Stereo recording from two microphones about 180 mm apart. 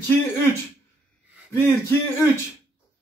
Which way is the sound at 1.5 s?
15° left (ahead or behind).